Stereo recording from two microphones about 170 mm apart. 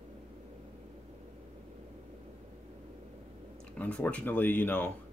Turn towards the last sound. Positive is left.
turn(degrees=10)  # may be behind; listen again after turning